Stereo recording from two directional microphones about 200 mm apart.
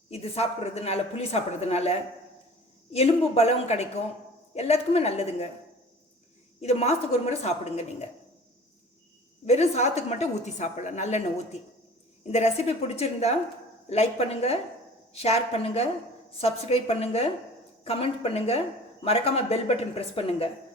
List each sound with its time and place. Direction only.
0.1 s a woman's voice: 30° left (ahead or behind)
6.6 s a woman's voice: 30° left (ahead or behind)
9.5 s a woman's voice: 35° left (ahead or behind)
12.2 s a woman's voice: 35° left (ahead or behind)